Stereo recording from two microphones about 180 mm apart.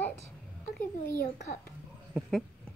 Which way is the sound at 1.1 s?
55° left (ahead or behind).